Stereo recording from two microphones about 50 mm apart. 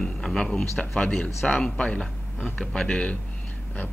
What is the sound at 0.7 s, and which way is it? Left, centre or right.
A man's voice, centre.